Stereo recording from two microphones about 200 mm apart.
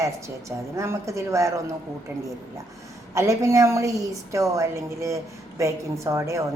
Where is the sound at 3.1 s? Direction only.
15° right (ahead or behind).